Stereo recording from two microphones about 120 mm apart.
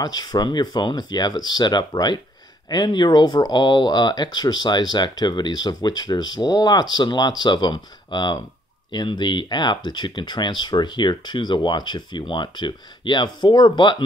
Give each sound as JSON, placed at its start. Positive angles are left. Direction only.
{"t": 0.0, "sound": "speech", "side_deg": 35}